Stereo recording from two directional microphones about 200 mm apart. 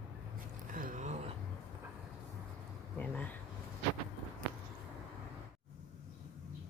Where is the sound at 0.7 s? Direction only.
40° right (ahead or behind).